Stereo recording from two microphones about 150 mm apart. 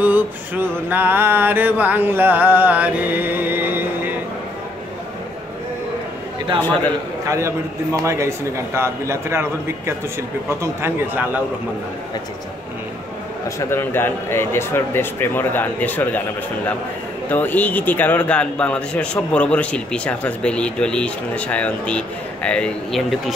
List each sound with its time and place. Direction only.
0.0 s a sound: 10° right (ahead or behind)
6.6 s a man's voice: 10° left (ahead or behind)
7.2 s a man's voice: 20° right (ahead or behind)
13.6 s a man's voice: 15° left (ahead or behind)
17.3 s a man's voice: 10° left (ahead or behind)